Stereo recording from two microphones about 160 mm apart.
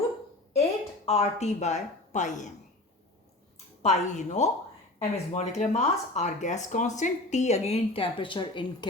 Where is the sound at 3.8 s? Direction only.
45° left (ahead or behind).